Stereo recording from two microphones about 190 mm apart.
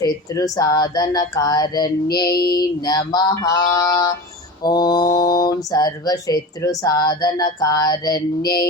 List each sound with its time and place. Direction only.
0.0 s speech: 20° left (ahead or behind)